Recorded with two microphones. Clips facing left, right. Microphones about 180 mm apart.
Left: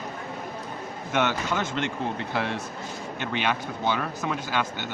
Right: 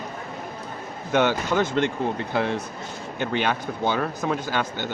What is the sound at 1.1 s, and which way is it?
Speech, 35° right (ahead or behind).